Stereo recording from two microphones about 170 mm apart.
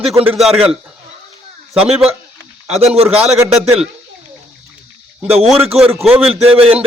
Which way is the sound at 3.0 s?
35° right (ahead or behind).